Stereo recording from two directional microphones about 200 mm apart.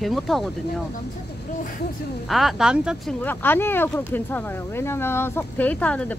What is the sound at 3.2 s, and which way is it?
Speech, 10° left (ahead or behind).